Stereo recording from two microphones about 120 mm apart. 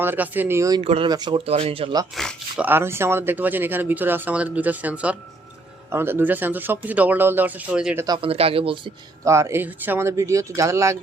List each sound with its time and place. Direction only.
0.0 s speech: 15° right (ahead or behind)
0.8 s speech: 55° right (ahead or behind)
1.0 s speech: 35° right (ahead or behind)
1.5 s speech: 55° right (ahead or behind)
2.2 s speech: centre (ahead or behind)
2.6 s speech: 15° right (ahead or behind)
8.2 s speech: 55° right (ahead or behind)
9.2 s speech: 25° right (ahead or behind)